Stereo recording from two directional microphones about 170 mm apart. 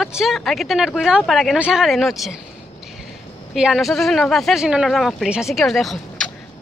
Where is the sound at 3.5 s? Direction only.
Centre (ahead or behind).